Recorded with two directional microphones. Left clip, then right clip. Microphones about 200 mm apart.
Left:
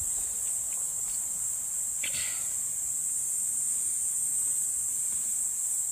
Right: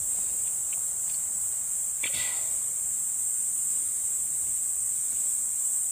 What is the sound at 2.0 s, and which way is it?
Cricket, 40° right (ahead or behind).